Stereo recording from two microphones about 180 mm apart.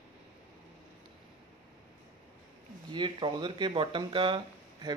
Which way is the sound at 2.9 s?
25° right (ahead or behind).